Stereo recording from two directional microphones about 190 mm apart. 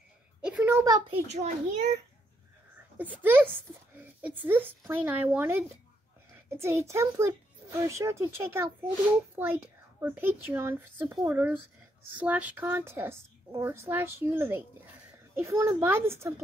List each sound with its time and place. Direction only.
0.4 s a sound: 5° right (ahead or behind)
1.1 s a child's voice: 35° right (ahead or behind)
3.0 s a woman's voice: 10° right (ahead or behind)